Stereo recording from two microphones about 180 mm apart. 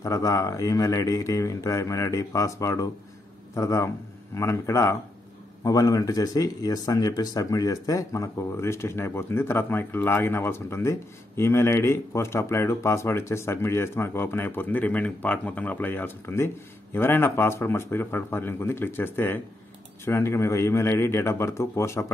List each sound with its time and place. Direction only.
0.0 s speech: 20° left (ahead or behind)